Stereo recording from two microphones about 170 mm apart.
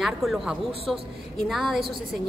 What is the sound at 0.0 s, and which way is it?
A woman's voice, centre (ahead or behind).